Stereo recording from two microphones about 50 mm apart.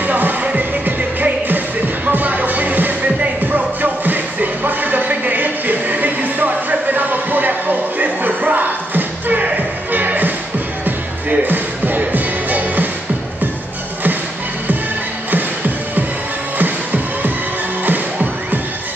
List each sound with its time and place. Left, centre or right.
0.0 s music: right
16.5 s music: right